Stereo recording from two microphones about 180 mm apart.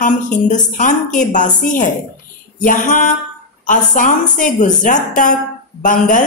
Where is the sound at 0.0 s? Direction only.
45° left (ahead or behind).